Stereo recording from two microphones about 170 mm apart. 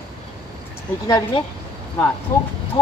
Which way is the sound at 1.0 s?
20° left (ahead or behind).